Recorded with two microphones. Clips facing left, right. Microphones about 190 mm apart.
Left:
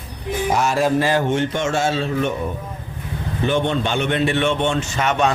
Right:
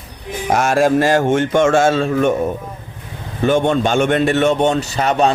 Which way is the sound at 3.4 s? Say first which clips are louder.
Right 5 dB; 45° right (ahead or behind).